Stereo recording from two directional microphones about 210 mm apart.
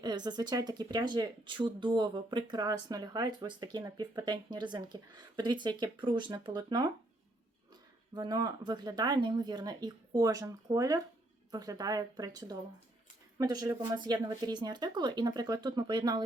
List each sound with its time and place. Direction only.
0.0 s speech: 20° right (ahead or behind)
8.1 s a woman's voice: 20° right (ahead or behind)